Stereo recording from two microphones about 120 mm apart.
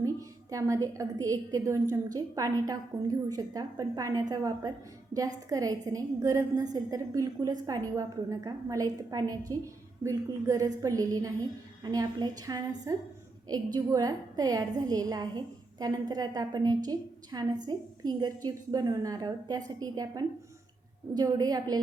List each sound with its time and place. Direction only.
0.0 s a woman's voice: 25° right (ahead or behind)